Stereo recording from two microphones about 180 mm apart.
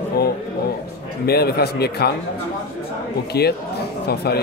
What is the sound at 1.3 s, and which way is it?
Speech, 60° left (ahead or behind).